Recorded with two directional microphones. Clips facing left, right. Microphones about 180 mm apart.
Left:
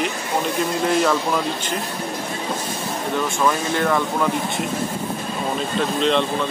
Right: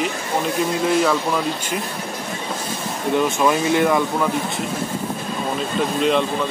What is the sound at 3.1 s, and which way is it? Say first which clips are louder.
Speech: right 4 dB; 20° right (ahead or behind).